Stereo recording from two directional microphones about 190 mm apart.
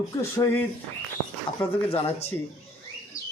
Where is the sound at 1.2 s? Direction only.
10° left (ahead or behind).